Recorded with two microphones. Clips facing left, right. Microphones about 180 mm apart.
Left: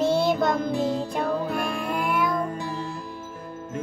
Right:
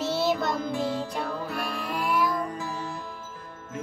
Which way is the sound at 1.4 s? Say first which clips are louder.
Left 5 dB; 50° left (ahead or behind).